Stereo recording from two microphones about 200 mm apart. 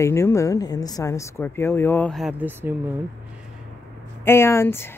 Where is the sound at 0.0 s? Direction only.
15° left (ahead or behind); by 2.7 s 10° right (ahead or behind).